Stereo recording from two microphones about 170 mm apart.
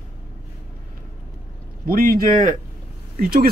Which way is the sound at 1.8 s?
55° right (ahead or behind).